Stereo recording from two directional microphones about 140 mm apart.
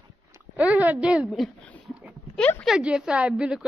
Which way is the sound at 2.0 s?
5° left (ahead or behind).